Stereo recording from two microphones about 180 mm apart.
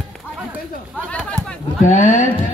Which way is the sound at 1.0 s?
5° left (ahead or behind).